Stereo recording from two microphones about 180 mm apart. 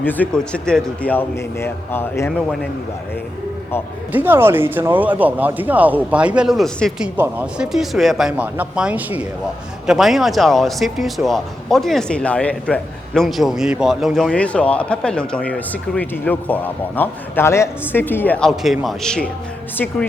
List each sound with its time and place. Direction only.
0.0 s a man's voice: 10° left (ahead or behind)
4.1 s a man's voice: 10° right (ahead or behind); by 20.1 s 10° left (ahead or behind)